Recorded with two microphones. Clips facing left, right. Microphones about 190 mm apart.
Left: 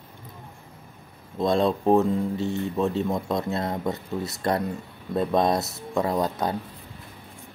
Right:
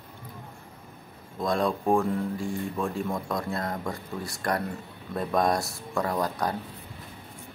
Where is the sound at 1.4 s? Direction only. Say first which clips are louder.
Left 4 dB; 25° left (ahead or behind).